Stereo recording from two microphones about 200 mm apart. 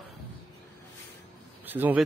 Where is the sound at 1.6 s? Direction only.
10° right (ahead or behind).